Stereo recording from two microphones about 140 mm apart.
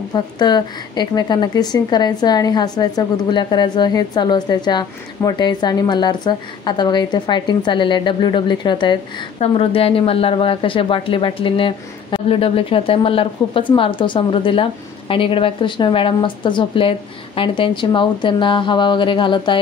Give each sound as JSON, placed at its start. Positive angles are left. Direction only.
{"t": 0.1, "sound": "a woman's voice", "side_deg": 30}
{"t": 9.4, "sound": "a woman's voice", "side_deg": 45}